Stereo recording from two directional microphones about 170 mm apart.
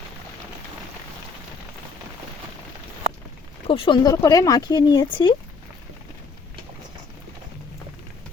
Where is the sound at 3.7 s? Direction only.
30° left (ahead or behind).